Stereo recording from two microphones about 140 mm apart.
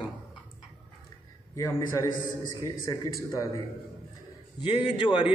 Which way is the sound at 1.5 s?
20° left (ahead or behind).